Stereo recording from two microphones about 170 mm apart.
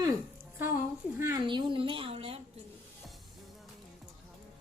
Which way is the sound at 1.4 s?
30° right (ahead or behind).